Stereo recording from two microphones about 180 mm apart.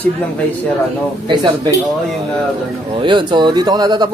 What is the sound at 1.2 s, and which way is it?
Mantra, 25° right (ahead or behind).